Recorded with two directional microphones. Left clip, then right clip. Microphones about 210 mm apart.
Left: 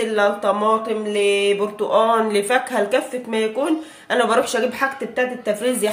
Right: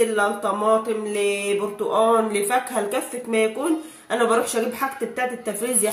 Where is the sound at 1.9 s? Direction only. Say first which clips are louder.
Left 2 dB; 40° left (ahead or behind).